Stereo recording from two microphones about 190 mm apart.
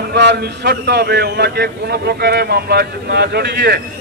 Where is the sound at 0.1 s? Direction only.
60° right (ahead or behind).